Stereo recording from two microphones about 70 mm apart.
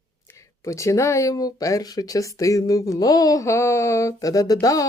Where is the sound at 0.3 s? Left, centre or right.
Left.